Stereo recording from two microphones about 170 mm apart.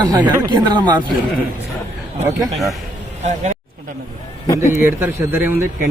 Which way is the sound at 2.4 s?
Centre (ahead or behind).